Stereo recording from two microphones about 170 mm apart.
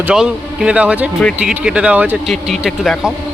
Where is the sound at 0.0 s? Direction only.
5° right (ahead or behind).